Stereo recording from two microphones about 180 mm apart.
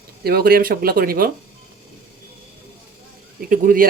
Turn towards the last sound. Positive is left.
turn(degrees=-50)  # may be behind; listen again after turning